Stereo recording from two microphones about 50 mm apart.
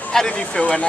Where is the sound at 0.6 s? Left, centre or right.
Left.